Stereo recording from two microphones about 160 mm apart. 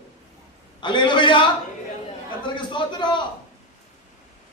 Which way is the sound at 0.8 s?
30° left (ahead or behind).